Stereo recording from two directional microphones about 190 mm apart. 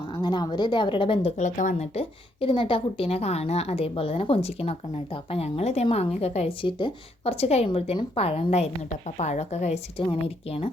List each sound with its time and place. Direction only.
0.1 s speech: 25° left (ahead or behind)
1.4 s a woman's voice: 40° left (ahead or behind)